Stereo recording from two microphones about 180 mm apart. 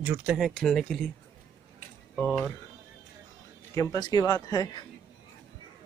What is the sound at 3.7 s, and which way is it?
Speech, 20° left (ahead or behind).